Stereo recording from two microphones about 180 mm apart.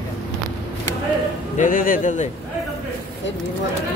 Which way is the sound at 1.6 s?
50° left (ahead or behind).